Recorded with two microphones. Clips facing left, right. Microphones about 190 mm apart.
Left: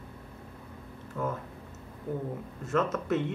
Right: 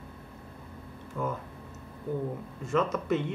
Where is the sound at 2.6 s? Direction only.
5° left (ahead or behind).